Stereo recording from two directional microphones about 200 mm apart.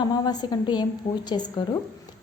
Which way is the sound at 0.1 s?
20° left (ahead or behind).